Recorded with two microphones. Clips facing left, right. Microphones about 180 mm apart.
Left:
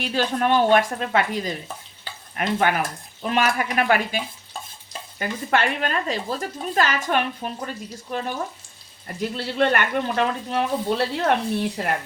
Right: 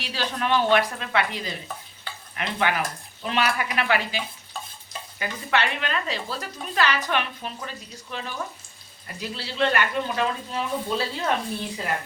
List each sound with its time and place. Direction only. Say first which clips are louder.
0.0 s speech: left 6 dB; 50° left (ahead or behind)
5.2 s speech: left 3 dB; 45° left (ahead or behind); by 11.9 s 65° left (ahead or behind)